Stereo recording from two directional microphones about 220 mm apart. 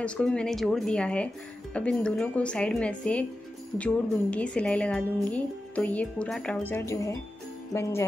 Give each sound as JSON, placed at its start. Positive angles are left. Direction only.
{"t": 0.0, "sound": "a woman's voice", "side_deg": 5}